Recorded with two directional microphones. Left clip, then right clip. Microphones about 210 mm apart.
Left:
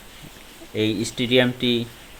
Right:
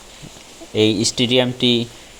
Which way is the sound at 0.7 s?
15° right (ahead or behind).